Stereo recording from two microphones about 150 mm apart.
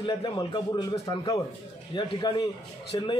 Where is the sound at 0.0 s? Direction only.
30° left (ahead or behind).